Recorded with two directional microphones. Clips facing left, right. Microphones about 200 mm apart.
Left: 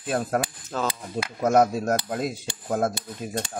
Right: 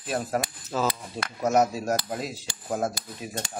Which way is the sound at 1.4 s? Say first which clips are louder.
Left 3 dB; 50° left (ahead or behind).